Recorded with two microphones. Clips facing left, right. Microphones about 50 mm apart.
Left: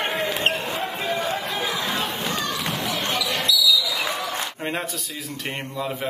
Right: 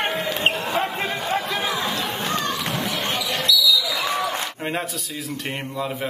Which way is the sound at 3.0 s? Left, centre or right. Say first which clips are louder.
Even; right.